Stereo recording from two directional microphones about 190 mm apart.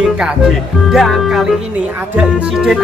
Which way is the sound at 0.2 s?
Centre (ahead or behind).